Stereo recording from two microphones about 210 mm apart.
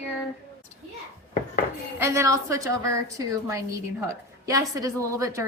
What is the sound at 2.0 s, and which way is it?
A woman's voice, 10° right (ahead or behind).